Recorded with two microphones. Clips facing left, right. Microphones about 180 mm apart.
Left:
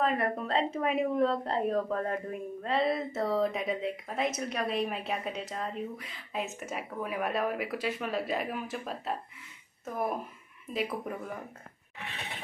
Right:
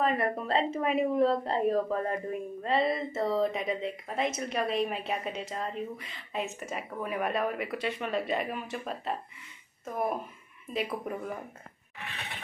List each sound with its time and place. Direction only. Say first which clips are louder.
0.0 s speech: right 1 dB; centre (ahead or behind)
10.7 s speech: even; centre (ahead or behind)